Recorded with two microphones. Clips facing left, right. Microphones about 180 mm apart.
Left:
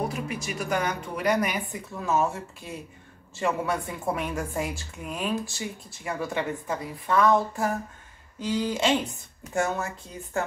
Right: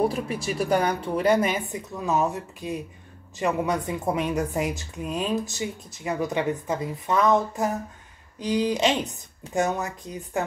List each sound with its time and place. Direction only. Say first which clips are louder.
0.1 s a woman's voice: right 4 dB; 30° right (ahead or behind)